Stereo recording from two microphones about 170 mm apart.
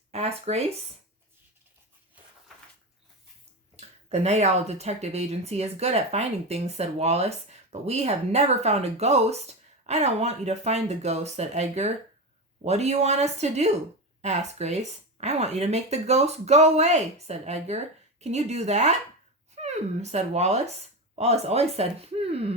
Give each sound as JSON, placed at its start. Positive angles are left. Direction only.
{"t": 0.1, "sound": "speech", "side_deg": -40}
{"t": 3.8, "sound": "speech", "side_deg": -40}